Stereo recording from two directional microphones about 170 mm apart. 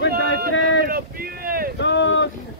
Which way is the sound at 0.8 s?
60° right (ahead or behind).